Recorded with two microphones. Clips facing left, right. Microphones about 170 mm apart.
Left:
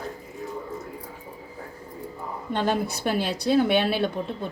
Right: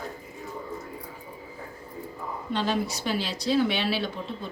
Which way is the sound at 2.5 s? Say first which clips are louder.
Left 3 dB; 55° left (ahead or behind).